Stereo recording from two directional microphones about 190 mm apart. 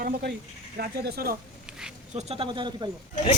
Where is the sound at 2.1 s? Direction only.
35° right (ahead or behind).